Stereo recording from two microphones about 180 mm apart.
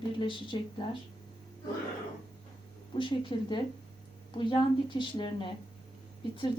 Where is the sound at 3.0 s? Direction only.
25° left (ahead or behind).